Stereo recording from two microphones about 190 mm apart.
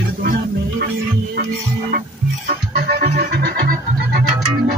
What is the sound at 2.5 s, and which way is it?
Music, 55° right (ahead or behind).